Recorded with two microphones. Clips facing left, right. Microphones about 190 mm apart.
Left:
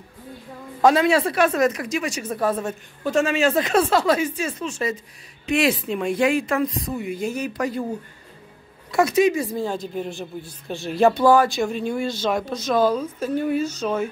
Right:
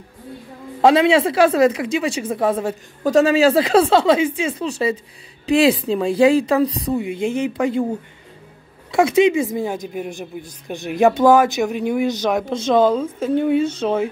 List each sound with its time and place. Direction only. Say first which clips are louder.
0.7 s a woman's voice: right 3 dB; 25° right (ahead or behind)
3.0 s a woman's voice: right 6 dB; 40° right (ahead or behind)
8.9 s a woman's voice: right 4 dB; 25° right (ahead or behind)